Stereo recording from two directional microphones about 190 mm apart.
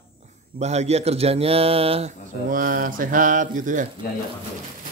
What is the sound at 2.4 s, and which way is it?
Speech, 45° right (ahead or behind).